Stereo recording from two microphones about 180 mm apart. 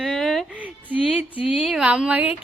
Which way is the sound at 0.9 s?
30° left (ahead or behind).